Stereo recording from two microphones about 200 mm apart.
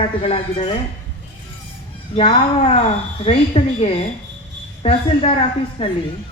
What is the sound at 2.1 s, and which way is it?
Speech, 30° left (ahead or behind).